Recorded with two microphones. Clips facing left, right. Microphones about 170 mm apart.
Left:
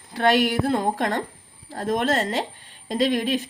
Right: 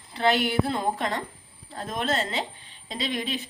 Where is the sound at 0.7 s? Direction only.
50° left (ahead or behind).